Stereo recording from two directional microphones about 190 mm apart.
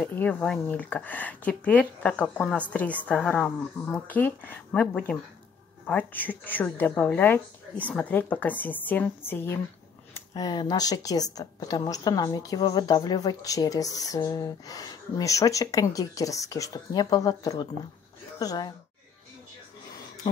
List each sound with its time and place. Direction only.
0.0 s a woman's voice: 10° left (ahead or behind)